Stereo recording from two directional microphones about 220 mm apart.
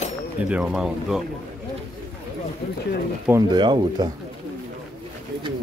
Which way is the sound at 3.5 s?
20° right (ahead or behind).